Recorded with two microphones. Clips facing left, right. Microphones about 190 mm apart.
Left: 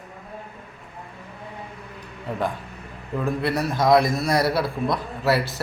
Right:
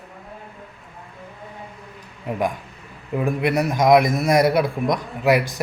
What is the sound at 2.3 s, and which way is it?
A man's voice, 15° right (ahead or behind).